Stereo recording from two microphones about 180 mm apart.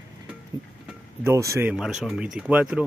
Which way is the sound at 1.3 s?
15° right (ahead or behind).